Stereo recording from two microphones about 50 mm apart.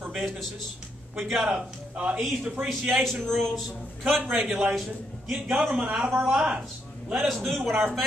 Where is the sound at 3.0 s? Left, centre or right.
Centre.